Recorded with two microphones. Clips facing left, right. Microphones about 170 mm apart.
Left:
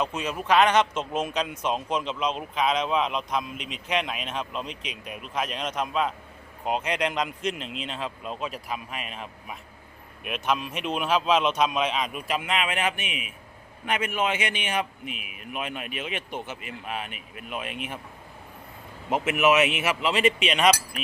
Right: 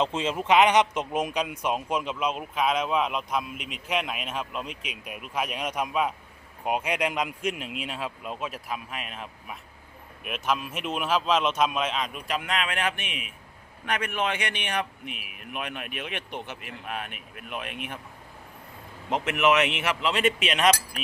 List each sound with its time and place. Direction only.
0.0 s a man's voice: 25° right (ahead or behind); by 15.1 s 5° left (ahead or behind)
15.1 s speech: 50° right (ahead or behind)
15.5 s a man's voice: centre (ahead or behind)
17.1 s speech: 50° right (ahead or behind)
19.1 s a man's voice: 5° left (ahead or behind)